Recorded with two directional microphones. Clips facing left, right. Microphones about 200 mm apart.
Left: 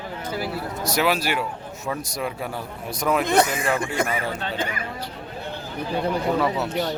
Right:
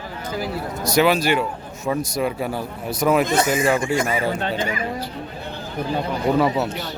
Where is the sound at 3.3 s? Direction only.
60° left (ahead or behind).